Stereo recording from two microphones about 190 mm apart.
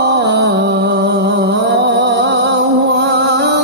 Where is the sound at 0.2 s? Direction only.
60° right (ahead or behind).